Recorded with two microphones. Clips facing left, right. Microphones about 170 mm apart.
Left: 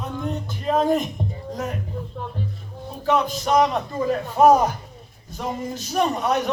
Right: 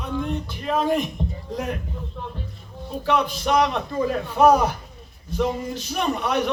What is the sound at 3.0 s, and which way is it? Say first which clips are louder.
A man's voice: left 1 dB; 40° left (ahead or behind).